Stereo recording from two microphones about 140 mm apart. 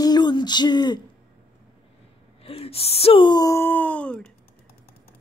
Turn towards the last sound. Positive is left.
turn(degrees=10)  # may be behind; listen again after turning